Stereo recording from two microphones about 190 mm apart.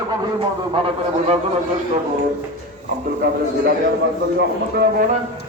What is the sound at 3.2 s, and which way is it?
Speech, 55° right (ahead or behind).